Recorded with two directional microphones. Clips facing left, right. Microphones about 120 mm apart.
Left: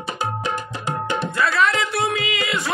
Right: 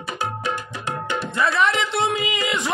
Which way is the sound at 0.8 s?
25° left (ahead or behind).